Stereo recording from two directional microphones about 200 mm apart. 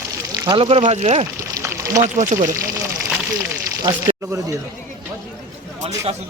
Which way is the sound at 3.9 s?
20° right (ahead or behind).